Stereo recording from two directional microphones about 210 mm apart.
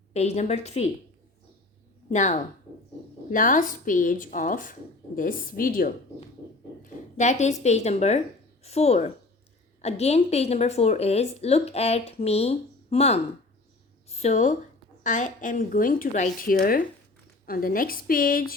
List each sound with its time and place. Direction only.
0.1 s a woman's voice: 30° left (ahead or behind)
2.0 s a woman's voice: 35° left (ahead or behind)
7.2 s a woman's voice: 35° left (ahead or behind)